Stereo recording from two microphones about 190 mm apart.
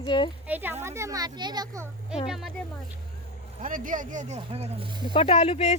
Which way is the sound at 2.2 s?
Centre (ahead or behind).